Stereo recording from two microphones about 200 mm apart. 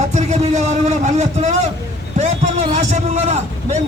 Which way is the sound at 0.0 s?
35° right (ahead or behind).